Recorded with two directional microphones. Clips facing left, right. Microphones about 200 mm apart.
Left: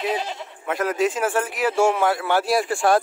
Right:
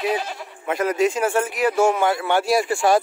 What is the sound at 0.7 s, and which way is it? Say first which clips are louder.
Speech: right 2 dB; centre (ahead or behind).